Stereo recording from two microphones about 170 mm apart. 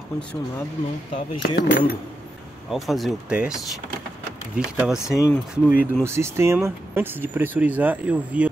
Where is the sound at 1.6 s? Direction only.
75° left (ahead or behind).